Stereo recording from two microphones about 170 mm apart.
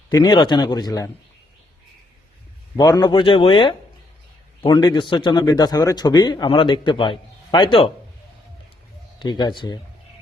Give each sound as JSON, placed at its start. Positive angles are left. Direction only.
{"t": 0.1, "sound": "speech", "side_deg": 25}
{"t": 2.7, "sound": "speech", "side_deg": 25}
{"t": 9.1, "sound": "speech", "side_deg": 25}